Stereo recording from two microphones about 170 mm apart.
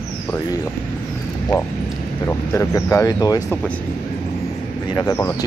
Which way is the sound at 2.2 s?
15° left (ahead or behind).